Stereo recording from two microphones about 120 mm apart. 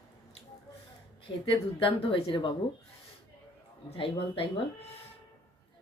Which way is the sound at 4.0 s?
50° left (ahead or behind).